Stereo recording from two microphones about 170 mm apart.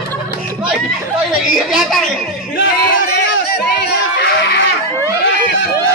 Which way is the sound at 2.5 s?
75° left (ahead or behind).